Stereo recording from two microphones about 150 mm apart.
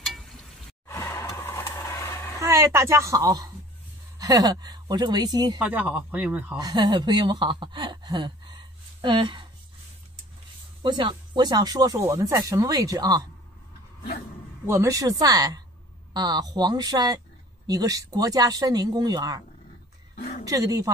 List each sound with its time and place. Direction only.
0.0 s a sound: centre (ahead or behind)
0.8 s vehicle: 15° left (ahead or behind)
2.4 s a woman's voice: 20° right (ahead or behind)
5.6 s speech: 10° right (ahead or behind)
6.5 s speech: 25° right (ahead or behind)
10.8 s speech: 30° right (ahead or behind)
14.7 s speech: 20° right (ahead or behind)
20.2 s a sound: 50° left (ahead or behind)
20.4 s speech: 25° right (ahead or behind)